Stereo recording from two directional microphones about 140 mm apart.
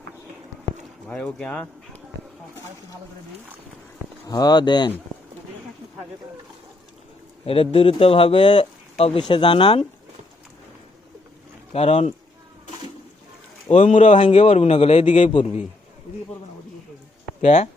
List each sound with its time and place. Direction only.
1.0 s speech: 5° left (ahead or behind)
4.3 s speech: 30° left (ahead or behind)
7.4 s speech: 40° left (ahead or behind)
11.7 s a man's voice: 45° left (ahead or behind)
13.7 s speech: 55° left (ahead or behind)
14.2 s a man's voice: 40° left (ahead or behind)
17.4 s a man's voice: 50° left (ahead or behind)